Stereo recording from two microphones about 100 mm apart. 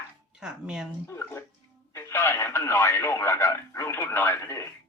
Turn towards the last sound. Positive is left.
turn(degrees=25)  # may be behind; listen again after turning